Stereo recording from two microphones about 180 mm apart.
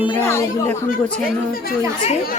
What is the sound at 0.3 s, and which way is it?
Speech, 15° left (ahead or behind).